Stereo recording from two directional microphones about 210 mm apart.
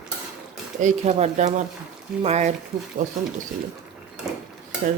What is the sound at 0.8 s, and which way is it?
Speech, 35° right (ahead or behind).